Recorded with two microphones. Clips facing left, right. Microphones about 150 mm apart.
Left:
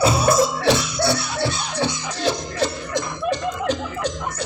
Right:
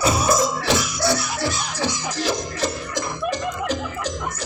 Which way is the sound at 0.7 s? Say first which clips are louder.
Left 1 dB; 30° left (ahead or behind).